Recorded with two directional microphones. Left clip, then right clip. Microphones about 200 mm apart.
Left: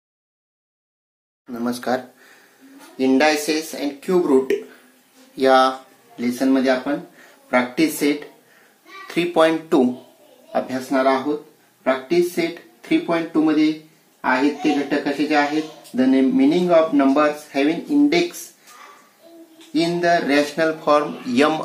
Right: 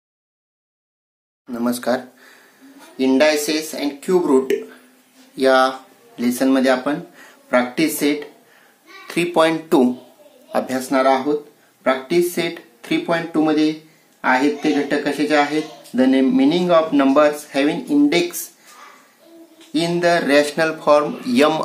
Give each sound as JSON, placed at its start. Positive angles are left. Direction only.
{"t": 1.5, "sound": "speech", "side_deg": -10}
{"t": 3.0, "sound": "speech", "side_deg": 0}
{"t": 5.3, "sound": "a sound", "side_deg": -10}
{"t": 6.2, "sound": "speech", "side_deg": -20}
{"t": 7.4, "sound": "speech", "side_deg": -15}
{"t": 10.5, "sound": "speech", "side_deg": -25}
{"t": 19.7, "sound": "speech", "side_deg": -20}